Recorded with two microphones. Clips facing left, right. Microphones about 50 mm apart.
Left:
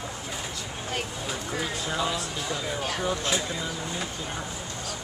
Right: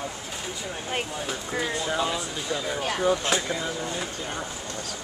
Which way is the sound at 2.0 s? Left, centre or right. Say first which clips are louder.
Right 1 dB; right.